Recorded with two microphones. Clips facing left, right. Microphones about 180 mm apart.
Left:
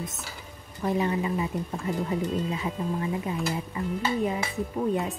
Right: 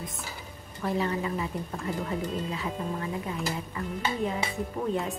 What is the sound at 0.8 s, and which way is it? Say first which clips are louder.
Speech: left 3 dB; 20° left (ahead or behind).